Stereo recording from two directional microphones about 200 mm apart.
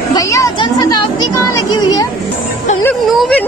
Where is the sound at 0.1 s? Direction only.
15° left (ahead or behind).